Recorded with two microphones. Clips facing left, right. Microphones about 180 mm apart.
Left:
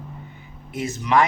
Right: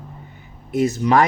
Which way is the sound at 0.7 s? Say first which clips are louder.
Right 4 dB; 35° right (ahead or behind).